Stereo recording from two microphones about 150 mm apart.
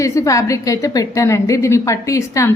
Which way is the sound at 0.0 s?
20° left (ahead or behind).